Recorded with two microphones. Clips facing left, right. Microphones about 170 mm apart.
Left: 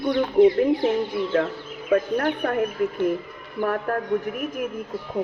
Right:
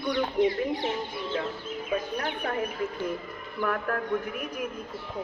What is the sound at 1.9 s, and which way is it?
Speech, 55° left (ahead or behind).